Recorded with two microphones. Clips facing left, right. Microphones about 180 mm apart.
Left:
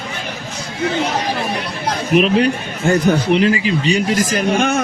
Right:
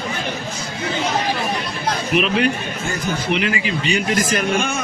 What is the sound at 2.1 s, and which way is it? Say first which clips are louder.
A man's voice: left 5 dB; 40° left (ahead or behind).